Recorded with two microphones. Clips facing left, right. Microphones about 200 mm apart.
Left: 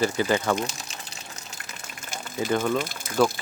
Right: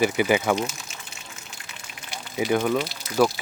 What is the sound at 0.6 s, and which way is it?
Water, 35° left (ahead or behind).